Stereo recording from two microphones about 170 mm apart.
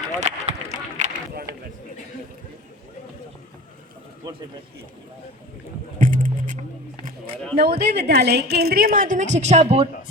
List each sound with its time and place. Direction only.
0.2 s run: 40° right (ahead or behind)
1.0 s a sound: 45° right (ahead or behind)
6.0 s music: 50° right (ahead or behind)
7.6 s a woman's voice: 70° right (ahead or behind); by 9.9 s 35° right (ahead or behind)